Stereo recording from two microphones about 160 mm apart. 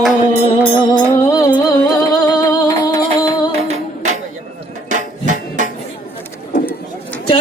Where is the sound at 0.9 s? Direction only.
20° left (ahead or behind).